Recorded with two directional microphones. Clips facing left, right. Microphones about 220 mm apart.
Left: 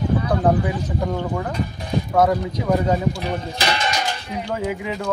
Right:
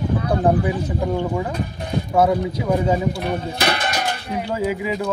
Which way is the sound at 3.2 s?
55° right (ahead or behind).